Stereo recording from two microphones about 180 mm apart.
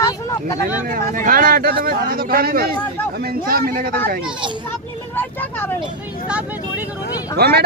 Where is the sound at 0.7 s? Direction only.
50° right (ahead or behind).